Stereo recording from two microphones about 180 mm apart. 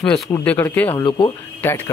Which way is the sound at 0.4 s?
10° left (ahead or behind).